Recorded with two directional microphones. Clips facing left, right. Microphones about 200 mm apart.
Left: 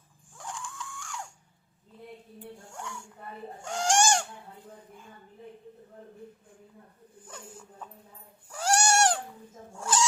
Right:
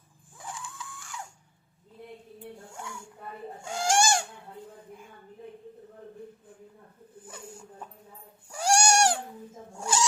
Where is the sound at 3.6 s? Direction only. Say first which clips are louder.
Even; 10° right (ahead or behind).